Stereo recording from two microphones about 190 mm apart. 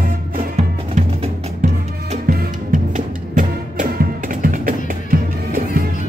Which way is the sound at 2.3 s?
45° right (ahead or behind).